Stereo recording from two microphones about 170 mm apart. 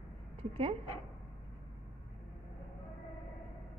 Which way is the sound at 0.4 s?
30° right (ahead or behind).